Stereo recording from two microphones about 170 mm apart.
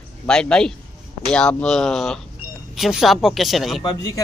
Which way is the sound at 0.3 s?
5° left (ahead or behind).